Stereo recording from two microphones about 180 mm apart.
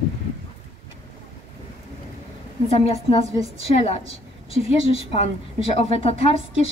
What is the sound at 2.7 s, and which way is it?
Speech, 35° left (ahead or behind).